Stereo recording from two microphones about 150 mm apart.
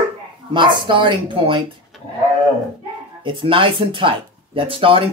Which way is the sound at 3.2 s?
35° right (ahead or behind).